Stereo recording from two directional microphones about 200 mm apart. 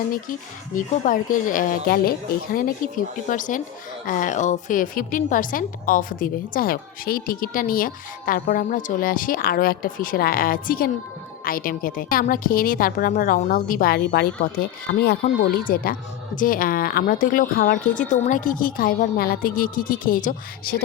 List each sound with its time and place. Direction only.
0.1 s a woman's voice: 40° left (ahead or behind)